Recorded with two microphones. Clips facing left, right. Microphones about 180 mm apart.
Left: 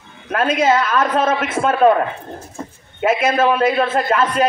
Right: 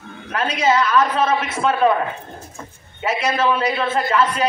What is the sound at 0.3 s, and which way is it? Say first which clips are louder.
A man's voice: left 3 dB; 50° left (ahead or behind).